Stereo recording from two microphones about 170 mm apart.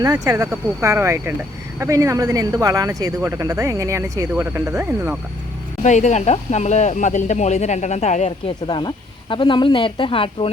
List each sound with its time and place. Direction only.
0.0 s speech: 20° right (ahead or behind)
5.8 s speech: 45° left (ahead or behind)
8.6 s speech: 30° left (ahead or behind)